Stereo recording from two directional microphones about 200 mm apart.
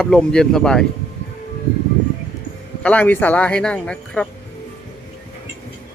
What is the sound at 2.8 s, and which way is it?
Speech, 10° left (ahead or behind).